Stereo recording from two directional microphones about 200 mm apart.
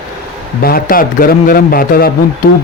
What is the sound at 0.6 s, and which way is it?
Speech, 45° left (ahead or behind).